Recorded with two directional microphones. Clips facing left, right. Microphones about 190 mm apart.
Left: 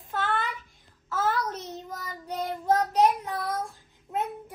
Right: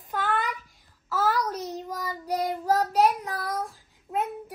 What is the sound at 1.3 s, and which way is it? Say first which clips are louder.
Child singing: right 3 dB; 35° right (ahead or behind).